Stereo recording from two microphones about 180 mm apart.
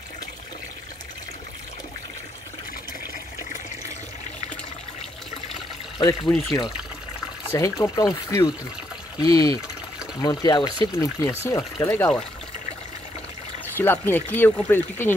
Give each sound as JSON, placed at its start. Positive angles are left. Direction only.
{"t": 5.9, "sound": "speech", "side_deg": 20}
{"t": 7.8, "sound": "speech", "side_deg": 20}
{"t": 13.7, "sound": "speech", "side_deg": 10}